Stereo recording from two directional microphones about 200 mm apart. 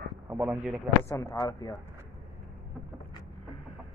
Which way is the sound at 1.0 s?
15° left (ahead or behind).